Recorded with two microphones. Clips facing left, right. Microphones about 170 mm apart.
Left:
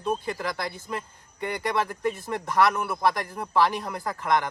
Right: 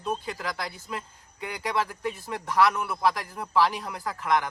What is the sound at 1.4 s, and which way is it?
A man's voice, 5° right (ahead or behind).